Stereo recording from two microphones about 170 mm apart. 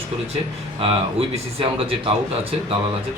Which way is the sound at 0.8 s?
35° right (ahead or behind).